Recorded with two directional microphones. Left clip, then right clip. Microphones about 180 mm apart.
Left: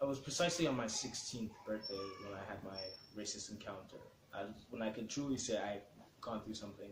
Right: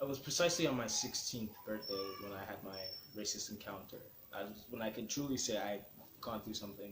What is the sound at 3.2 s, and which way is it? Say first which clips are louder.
Speech: right 3 dB; 30° right (ahead or behind).